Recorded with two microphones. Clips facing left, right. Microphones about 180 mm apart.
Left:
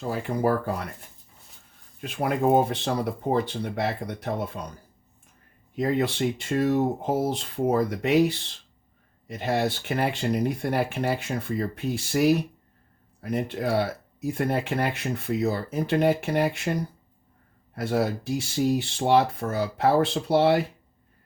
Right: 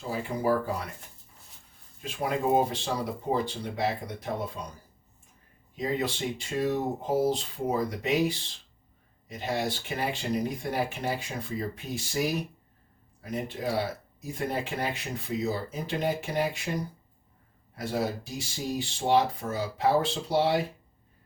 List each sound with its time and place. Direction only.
0.1 s speech: 60° left (ahead or behind)
2.0 s speech: 60° left (ahead or behind)
5.7 s speech: 60° left (ahead or behind)
9.2 s speech: 65° left (ahead or behind)
17.7 s speech: 65° left (ahead or behind)